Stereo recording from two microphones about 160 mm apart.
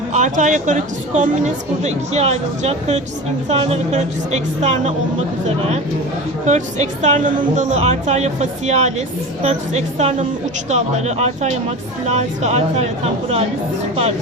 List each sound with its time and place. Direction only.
0.1 s speech: 50° right (ahead or behind)
6.4 s speech: 50° right (ahead or behind)